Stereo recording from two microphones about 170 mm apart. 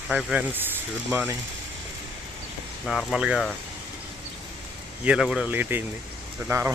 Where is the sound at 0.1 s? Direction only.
5° right (ahead or behind).